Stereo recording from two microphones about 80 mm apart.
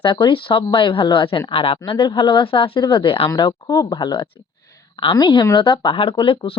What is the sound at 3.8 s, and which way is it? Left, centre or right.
Speech, left.